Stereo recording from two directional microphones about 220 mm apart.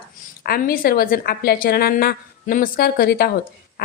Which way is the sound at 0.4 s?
40° left (ahead or behind).